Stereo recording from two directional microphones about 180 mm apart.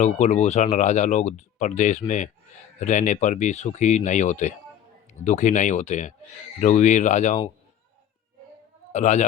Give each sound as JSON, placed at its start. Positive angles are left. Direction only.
{"t": 0.0, "sound": "speech", "side_deg": 40}
{"t": 8.9, "sound": "a man's voice", "side_deg": 40}